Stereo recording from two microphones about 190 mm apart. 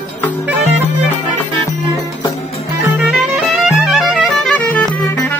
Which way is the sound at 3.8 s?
Centre (ahead or behind).